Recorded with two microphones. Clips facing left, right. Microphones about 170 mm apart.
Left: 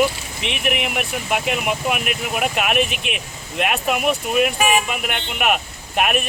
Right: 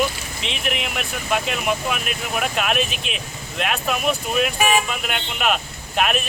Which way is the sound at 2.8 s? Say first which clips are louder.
Left 3 dB; 60° left (ahead or behind).